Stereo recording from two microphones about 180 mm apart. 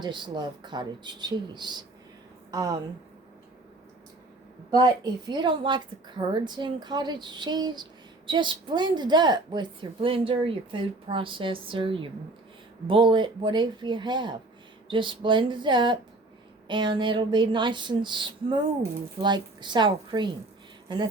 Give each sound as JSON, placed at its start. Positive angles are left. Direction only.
{"t": 0.0, "sound": "a woman's voice", "side_deg": -25}
{"t": 5.3, "sound": "a woman's voice", "side_deg": -25}